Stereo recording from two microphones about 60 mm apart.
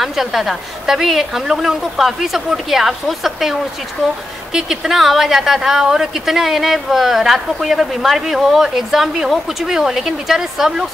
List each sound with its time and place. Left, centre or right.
0.0 s a woman's voice: centre
4.6 s a woman's voice: centre